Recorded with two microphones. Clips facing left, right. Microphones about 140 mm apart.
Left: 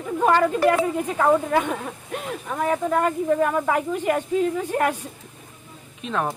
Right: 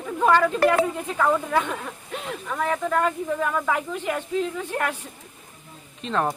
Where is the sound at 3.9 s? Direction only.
45° left (ahead or behind).